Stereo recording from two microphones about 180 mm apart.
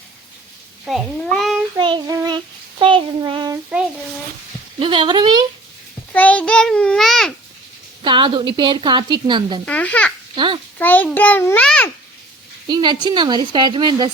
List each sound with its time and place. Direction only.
0.9 s a child's voice: centre (ahead or behind)
1.8 s child singing: 25° right (ahead or behind)
3.7 s a child's voice: 5° right (ahead or behind)
4.8 s a woman's voice: 25° right (ahead or behind)
6.1 s a child's voice: 5° left (ahead or behind)
8.0 s a woman's voice: 25° right (ahead or behind)
9.6 s a child's voice: 10° left (ahead or behind)
10.3 s a child's voice: 25° right (ahead or behind)
10.8 s a child's voice: 10° left (ahead or behind)
12.6 s a woman's voice: 25° right (ahead or behind)